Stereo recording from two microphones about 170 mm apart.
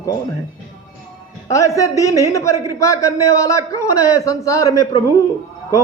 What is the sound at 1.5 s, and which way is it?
A man's voice, 20° left (ahead or behind).